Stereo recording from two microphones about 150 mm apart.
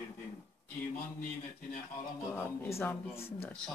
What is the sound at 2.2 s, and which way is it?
Speech, 15° left (ahead or behind).